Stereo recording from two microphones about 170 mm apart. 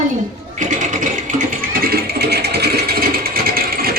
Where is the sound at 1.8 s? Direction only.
65° right (ahead or behind).